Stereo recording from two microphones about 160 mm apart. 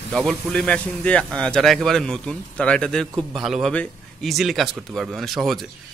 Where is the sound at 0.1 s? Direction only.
5° left (ahead or behind).